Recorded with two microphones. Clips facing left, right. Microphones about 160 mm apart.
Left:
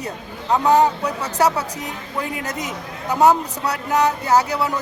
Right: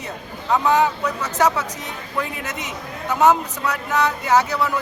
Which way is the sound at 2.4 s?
35° left (ahead or behind).